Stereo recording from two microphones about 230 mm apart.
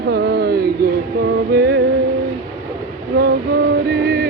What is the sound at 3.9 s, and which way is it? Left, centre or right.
Music, right.